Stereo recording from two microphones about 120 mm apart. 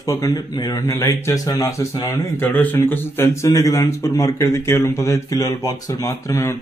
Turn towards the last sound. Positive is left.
turn(degrees=25)  # may be behind; listen again after turning